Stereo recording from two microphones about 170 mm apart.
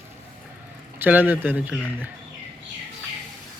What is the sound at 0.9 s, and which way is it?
Speech, 10° right (ahead or behind).